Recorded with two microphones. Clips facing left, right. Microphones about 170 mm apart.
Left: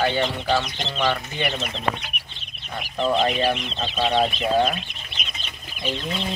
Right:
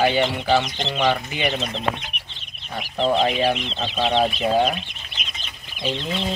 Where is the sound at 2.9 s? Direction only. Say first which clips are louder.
Right 1 dB; 20° right (ahead or behind).